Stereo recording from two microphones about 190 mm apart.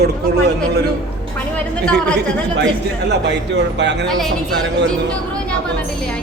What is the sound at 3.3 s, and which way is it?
Speech, 65° right (ahead or behind).